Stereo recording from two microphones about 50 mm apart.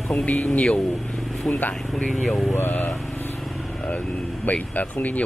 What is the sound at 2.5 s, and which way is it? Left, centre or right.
Speech, left.